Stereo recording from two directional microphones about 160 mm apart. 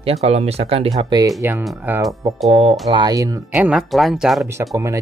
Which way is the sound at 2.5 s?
35° right (ahead or behind).